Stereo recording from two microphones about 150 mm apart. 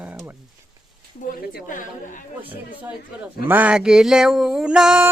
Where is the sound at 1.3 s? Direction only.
65° left (ahead or behind).